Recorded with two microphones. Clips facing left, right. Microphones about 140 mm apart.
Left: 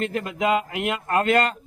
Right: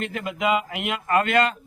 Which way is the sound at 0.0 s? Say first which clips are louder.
Left 2 dB; 35° left (ahead or behind).